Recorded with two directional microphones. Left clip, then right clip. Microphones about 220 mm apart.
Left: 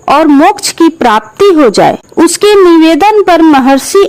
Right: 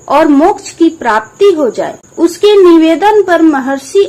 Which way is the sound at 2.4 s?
50° left (ahead or behind).